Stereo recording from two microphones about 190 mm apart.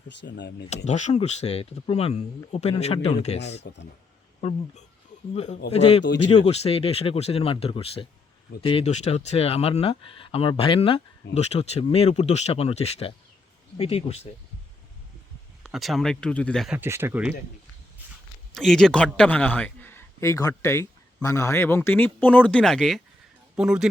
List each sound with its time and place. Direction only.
0.1 s speech: 65° left (ahead or behind)
0.9 s speech: 40° left (ahead or behind)
3.6 s speech: 65° left (ahead or behind)
4.4 s speech: 35° left (ahead or behind)
15.6 s speech: centre (ahead or behind)
18.5 s a man's voice: centre (ahead or behind)